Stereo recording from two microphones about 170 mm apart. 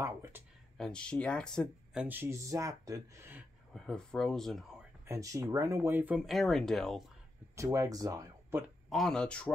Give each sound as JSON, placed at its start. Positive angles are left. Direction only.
{"t": 0.0, "sound": "speech", "side_deg": -15}
{"t": 0.7, "sound": "speech", "side_deg": 5}
{"t": 2.0, "sound": "speech", "side_deg": -15}
{"t": 3.7, "sound": "speech", "side_deg": 5}
{"t": 5.0, "sound": "speech", "side_deg": -20}
{"t": 7.5, "sound": "speech", "side_deg": -20}
{"t": 8.9, "sound": "speech", "side_deg": 0}